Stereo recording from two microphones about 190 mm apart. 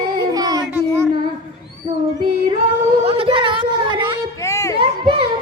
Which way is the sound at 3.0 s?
30° right (ahead or behind).